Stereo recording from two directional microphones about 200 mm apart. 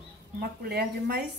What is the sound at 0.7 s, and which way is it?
Speech, 55° right (ahead or behind).